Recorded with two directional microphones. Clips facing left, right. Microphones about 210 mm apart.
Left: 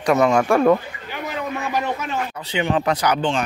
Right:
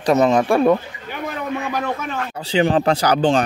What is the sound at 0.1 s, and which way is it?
Speech, 20° right (ahead or behind).